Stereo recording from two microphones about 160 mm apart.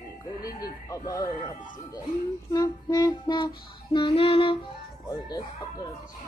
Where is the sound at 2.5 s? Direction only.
25° left (ahead or behind).